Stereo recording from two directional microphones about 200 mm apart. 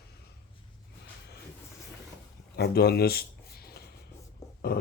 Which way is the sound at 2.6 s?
50° left (ahead or behind).